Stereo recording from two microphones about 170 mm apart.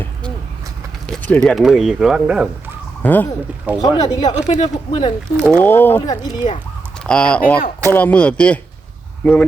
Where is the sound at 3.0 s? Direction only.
10° left (ahead or behind).